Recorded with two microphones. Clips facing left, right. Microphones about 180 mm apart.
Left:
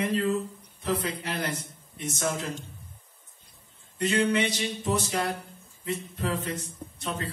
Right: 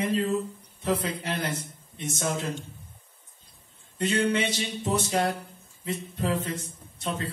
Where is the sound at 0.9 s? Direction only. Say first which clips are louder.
Right 1 dB; 25° right (ahead or behind).